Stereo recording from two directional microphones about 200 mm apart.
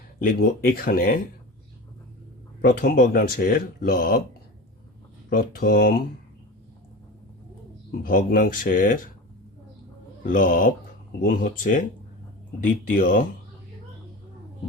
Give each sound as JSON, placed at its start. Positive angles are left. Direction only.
{"t": 0.2, "sound": "speech", "side_deg": 45}
{"t": 2.6, "sound": "speech", "side_deg": 45}
{"t": 5.3, "sound": "speech", "side_deg": 45}
{"t": 8.0, "sound": "speech", "side_deg": 45}
{"t": 10.2, "sound": "speech", "side_deg": 40}